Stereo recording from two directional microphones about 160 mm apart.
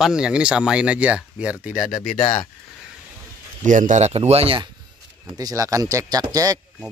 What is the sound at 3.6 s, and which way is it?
Speech, 55° right (ahead or behind).